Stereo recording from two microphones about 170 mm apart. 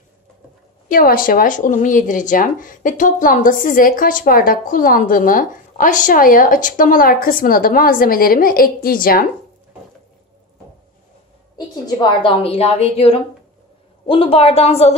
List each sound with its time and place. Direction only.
0.8 s speech: 55° left (ahead or behind)
11.5 s a woman's voice: 25° left (ahead or behind)